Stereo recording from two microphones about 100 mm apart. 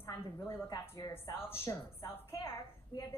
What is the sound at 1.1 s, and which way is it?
Speech, 25° left (ahead or behind).